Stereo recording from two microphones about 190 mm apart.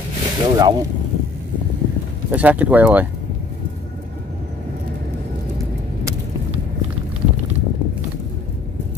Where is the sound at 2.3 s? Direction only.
10° right (ahead or behind).